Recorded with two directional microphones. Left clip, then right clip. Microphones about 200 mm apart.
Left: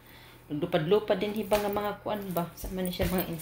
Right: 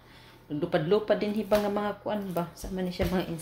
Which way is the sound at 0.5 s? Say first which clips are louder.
Even; 5° right (ahead or behind).